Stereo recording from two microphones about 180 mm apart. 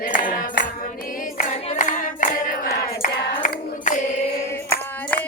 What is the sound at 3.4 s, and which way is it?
Hands, 45° left (ahead or behind).